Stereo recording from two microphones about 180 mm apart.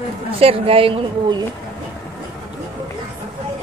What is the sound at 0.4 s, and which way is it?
Speech, 30° right (ahead or behind).